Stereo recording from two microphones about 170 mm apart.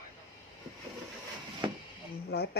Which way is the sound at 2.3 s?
70° left (ahead or behind).